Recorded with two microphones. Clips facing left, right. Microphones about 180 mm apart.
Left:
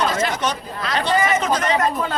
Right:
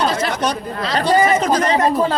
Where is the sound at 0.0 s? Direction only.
35° right (ahead or behind).